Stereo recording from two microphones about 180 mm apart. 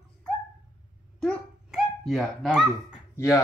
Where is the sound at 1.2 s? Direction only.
Centre (ahead or behind).